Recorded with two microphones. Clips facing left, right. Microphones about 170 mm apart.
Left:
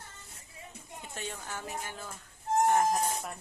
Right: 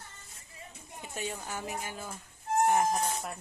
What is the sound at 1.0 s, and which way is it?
A woman's voice, 10° right (ahead or behind).